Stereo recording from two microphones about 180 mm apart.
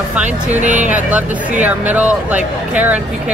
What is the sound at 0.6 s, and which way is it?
Speech, 45° right (ahead or behind).